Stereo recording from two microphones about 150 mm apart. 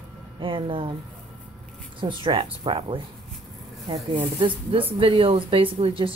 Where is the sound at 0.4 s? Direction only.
35° right (ahead or behind).